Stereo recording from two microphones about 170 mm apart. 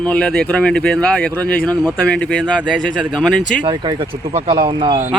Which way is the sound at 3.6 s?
25° right (ahead or behind).